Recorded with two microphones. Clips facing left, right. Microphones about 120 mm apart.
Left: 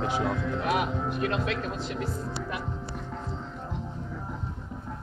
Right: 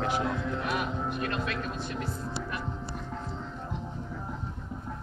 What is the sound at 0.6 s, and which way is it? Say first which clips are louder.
Speech: left 7 dB; 90° left.